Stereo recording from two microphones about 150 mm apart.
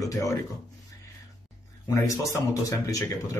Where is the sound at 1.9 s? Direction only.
20° left (ahead or behind).